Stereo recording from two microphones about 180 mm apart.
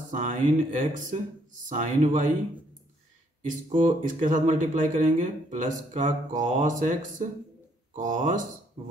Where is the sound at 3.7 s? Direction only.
45° right (ahead or behind).